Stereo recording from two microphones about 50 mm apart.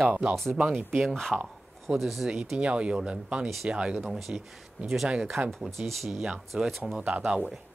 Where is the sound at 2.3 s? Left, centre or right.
Centre.